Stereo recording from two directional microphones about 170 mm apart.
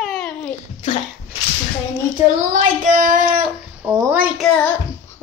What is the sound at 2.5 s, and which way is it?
Child singing, 50° right (ahead or behind).